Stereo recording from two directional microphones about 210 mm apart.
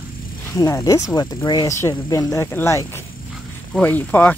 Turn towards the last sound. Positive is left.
turn(degrees=10)  # may be behind; listen again after turning